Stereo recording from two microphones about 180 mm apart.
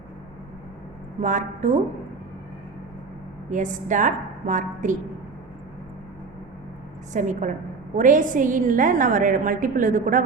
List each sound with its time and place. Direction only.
1.2 s a woman's voice: 45° right (ahead or behind)
3.5 s a woman's voice: 45° right (ahead or behind)
7.1 s a woman's voice: 45° right (ahead or behind)